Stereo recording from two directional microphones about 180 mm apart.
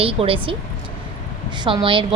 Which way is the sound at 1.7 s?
30° right (ahead or behind).